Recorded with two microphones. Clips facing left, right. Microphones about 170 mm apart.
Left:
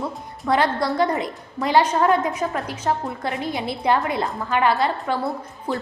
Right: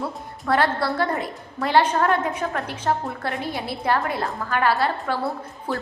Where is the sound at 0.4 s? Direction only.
15° left (ahead or behind).